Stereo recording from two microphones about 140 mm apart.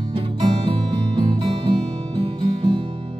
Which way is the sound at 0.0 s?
35° right (ahead or behind).